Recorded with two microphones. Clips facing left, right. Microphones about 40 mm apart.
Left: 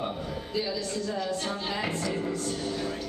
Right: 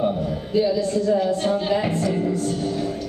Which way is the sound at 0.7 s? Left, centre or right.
Centre.